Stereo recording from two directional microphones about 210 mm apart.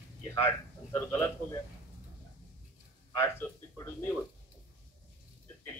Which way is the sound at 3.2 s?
15° left (ahead or behind).